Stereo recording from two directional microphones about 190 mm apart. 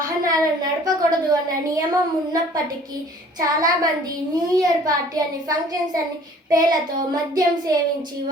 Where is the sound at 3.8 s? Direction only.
20° right (ahead or behind).